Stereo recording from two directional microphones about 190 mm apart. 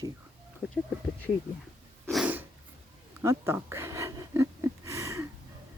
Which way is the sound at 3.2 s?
15° right (ahead or behind).